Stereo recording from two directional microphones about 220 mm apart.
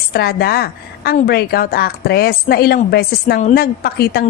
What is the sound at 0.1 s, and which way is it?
A woman's voice, 45° left (ahead or behind).